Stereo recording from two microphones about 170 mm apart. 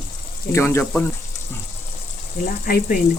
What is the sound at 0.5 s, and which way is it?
Speech, 15° left (ahead or behind).